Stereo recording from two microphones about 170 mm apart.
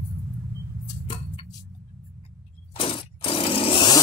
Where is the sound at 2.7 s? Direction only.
30° left (ahead or behind).